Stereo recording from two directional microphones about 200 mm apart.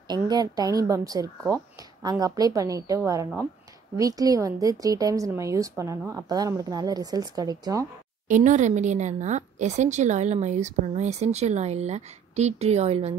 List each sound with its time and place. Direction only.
0.1 s a woman's voice: 20° right (ahead or behind)
8.3 s a woman's voice: 35° right (ahead or behind)